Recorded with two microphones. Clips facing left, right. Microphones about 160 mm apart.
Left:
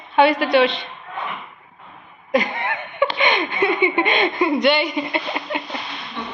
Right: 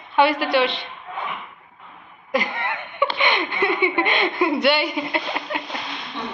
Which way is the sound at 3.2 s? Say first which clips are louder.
Left 2 dB; 20° left (ahead or behind).